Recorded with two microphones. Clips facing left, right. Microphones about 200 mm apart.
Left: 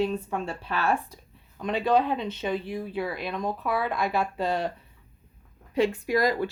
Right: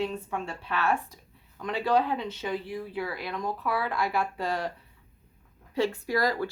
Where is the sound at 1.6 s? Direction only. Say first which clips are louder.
Left 2 dB; 20° left (ahead or behind).